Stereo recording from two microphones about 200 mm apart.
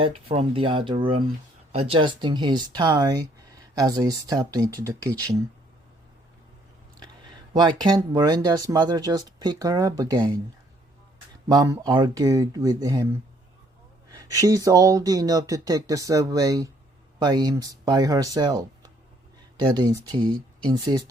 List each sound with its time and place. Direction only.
0.0 s speech: 25° right (ahead or behind)
7.5 s speech: 20° right (ahead or behind)
11.4 s speech: 20° right (ahead or behind)
14.1 s speech: 15° right (ahead or behind)